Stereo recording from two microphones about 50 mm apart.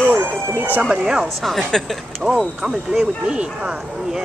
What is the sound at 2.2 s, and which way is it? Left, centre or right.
Speech, centre.